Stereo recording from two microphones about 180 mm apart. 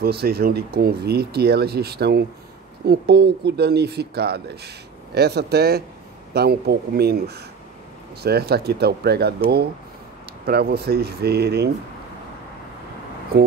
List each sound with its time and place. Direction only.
0.0 s speech: 60° right (ahead or behind)